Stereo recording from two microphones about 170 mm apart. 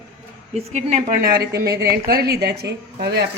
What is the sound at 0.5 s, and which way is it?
Speech, 40° right (ahead or behind).